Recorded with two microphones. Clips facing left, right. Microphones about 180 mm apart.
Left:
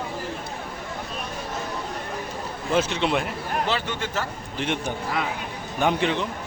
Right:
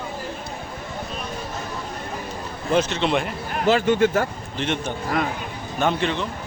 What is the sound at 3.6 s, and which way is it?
Speech, 45° right (ahead or behind).